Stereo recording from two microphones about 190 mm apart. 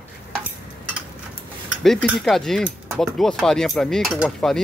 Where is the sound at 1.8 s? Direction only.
Centre (ahead or behind).